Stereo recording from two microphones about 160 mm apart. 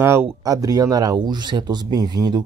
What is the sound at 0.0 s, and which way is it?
Speech, 15° right (ahead or behind).